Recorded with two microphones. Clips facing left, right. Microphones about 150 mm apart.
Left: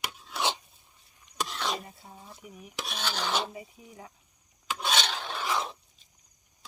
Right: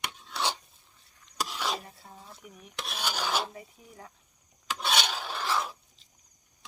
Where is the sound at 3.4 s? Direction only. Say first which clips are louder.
Left 2 dB; 5° left (ahead or behind).